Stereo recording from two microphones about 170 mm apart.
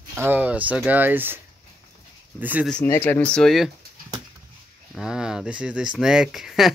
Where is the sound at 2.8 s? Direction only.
15° left (ahead or behind).